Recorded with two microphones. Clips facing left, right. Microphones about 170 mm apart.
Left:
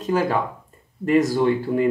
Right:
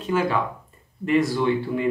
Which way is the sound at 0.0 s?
40° left (ahead or behind).